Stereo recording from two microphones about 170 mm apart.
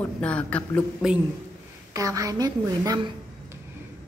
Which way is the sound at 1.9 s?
20° right (ahead or behind).